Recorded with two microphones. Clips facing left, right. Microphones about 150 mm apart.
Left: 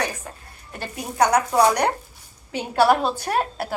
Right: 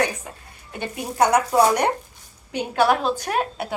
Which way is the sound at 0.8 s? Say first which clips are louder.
Even; 5° right (ahead or behind).